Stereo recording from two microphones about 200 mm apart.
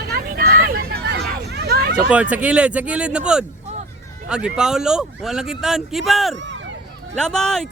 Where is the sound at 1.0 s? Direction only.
55° right (ahead or behind).